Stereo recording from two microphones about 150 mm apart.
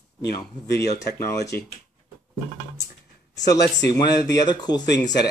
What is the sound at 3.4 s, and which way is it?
Speech, 25° left (ahead or behind).